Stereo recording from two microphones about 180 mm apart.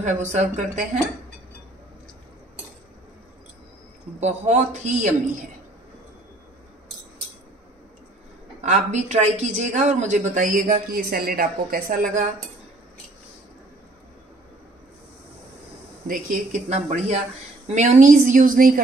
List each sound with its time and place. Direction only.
0.0 s speech: 40° right (ahead or behind)
4.2 s speech: 40° right (ahead or behind)
8.5 s speech: 40° right (ahead or behind)
16.1 s speech: 45° right (ahead or behind)